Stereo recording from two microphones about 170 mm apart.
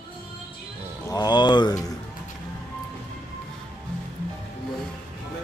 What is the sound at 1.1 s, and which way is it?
Speech, 25° left (ahead or behind).